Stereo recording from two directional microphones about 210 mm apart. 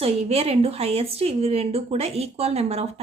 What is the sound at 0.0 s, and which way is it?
A woman's voice, 30° right (ahead or behind).